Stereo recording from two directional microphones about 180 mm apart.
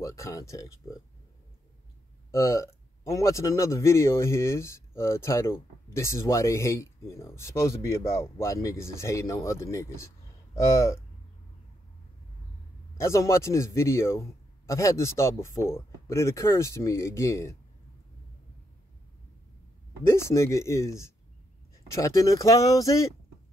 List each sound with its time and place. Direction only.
0.0 s speech: 15° left (ahead or behind)
2.3 s speech: 15° left (ahead or behind)
12.9 s speech: 15° left (ahead or behind)
20.0 s speech: 15° left (ahead or behind)